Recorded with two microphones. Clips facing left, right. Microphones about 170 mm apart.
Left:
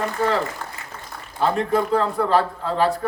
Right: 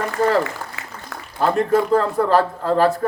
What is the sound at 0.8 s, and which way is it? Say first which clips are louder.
Applause: right 2 dB; 85° right.